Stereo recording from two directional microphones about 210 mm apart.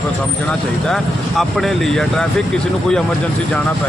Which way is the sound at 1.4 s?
Centre (ahead or behind).